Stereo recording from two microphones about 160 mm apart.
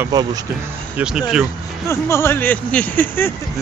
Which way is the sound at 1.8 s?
15° left (ahead or behind).